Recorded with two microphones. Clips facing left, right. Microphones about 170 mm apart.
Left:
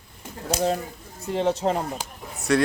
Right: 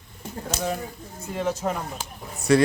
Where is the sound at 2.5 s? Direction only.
Centre (ahead or behind).